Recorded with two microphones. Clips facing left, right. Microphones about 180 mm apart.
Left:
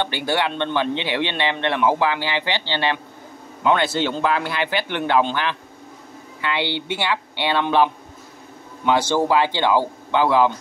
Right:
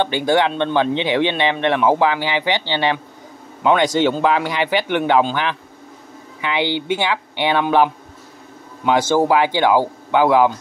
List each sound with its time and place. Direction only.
0.0 s speech: 15° right (ahead or behind)